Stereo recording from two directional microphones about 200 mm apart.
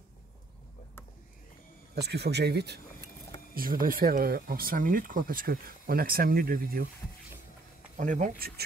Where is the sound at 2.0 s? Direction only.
55° right (ahead or behind).